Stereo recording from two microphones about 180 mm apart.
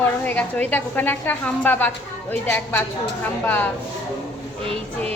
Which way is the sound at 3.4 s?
10° left (ahead or behind).